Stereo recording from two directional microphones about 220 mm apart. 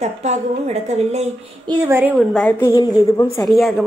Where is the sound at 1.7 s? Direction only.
10° right (ahead or behind).